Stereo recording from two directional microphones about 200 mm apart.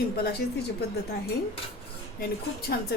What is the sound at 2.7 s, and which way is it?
Speech, 55° left (ahead or behind).